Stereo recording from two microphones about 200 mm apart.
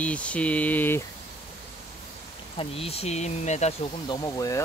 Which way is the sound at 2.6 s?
30° left (ahead or behind).